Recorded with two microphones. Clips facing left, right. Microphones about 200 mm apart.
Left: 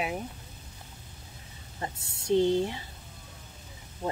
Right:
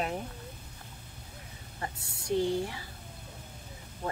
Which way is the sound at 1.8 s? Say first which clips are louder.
Left 3 dB; 25° left (ahead or behind).